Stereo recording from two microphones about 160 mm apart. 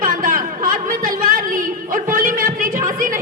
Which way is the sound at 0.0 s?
60° right (ahead or behind).